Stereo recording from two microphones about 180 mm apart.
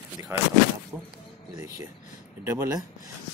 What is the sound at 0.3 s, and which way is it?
Speech, 15° right (ahead or behind).